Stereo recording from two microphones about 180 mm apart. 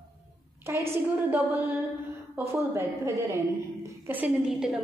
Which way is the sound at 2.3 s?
15° right (ahead or behind).